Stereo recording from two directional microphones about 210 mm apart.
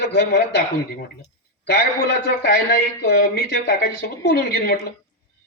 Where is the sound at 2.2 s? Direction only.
50° left (ahead or behind).